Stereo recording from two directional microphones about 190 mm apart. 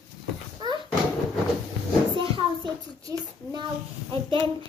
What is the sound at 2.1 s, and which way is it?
A child's voice, 25° right (ahead or behind).